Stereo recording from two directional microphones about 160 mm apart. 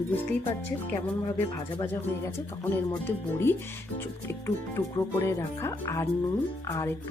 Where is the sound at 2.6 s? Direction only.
15° left (ahead or behind).